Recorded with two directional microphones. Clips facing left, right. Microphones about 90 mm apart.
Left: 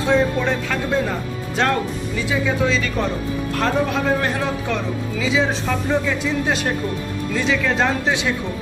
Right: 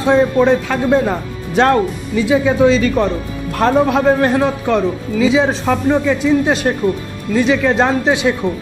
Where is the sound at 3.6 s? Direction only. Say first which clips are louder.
Right 9 dB; 35° right (ahead or behind).